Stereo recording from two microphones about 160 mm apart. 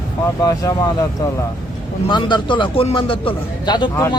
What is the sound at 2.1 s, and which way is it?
A man's voice, 30° left (ahead or behind).